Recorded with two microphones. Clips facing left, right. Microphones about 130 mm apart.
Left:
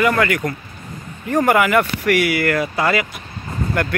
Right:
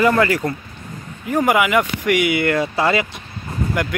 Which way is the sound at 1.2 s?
10° right (ahead or behind).